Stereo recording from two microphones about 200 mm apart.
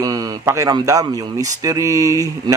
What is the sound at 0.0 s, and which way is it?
Speech, 20° right (ahead or behind).